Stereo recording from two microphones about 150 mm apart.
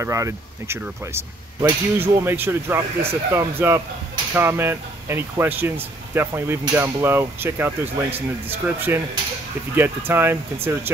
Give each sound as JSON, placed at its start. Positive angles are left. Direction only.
{"t": 0.0, "sound": "speech", "side_deg": -20}